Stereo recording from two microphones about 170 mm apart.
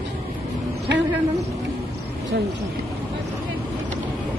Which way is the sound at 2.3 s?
75° right (ahead or behind).